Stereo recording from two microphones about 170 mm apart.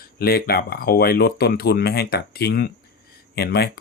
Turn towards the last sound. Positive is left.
turn(degrees=70)  # may be behind; listen again after turning